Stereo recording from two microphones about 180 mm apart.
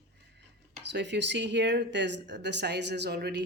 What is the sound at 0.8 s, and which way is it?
Speech, 75° right (ahead or behind).